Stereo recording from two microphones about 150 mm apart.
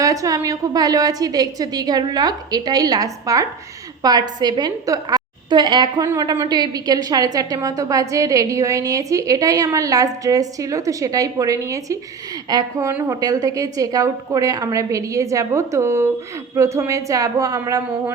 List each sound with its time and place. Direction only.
0.0 s a woman's voice: 25° right (ahead or behind)